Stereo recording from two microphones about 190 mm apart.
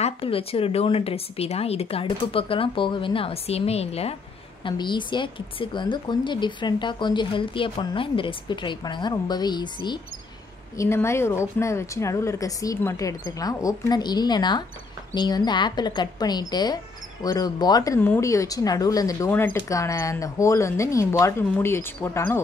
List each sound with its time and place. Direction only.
0.0 s a woman's voice: 30° left (ahead or behind); by 22.4 s 15° left (ahead or behind)